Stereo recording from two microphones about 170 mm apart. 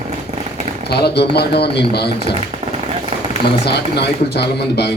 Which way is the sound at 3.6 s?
75° left (ahead or behind).